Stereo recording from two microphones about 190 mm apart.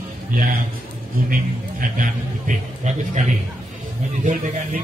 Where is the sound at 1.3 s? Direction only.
45° right (ahead or behind).